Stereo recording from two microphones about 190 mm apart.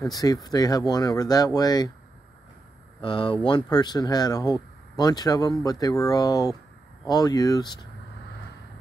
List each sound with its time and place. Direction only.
0.0 s speech: 20° left (ahead or behind)
3.0 s speech: 25° left (ahead or behind)